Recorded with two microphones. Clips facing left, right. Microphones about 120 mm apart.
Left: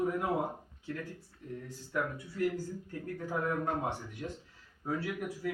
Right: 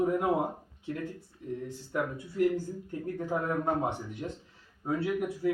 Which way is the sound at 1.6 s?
20° right (ahead or behind).